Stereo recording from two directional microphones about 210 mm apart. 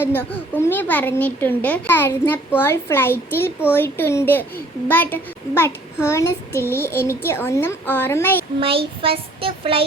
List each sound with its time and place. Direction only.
0.0 s a child's voice: 10° left (ahead or behind)
8.6 s speech: 25° right (ahead or behind)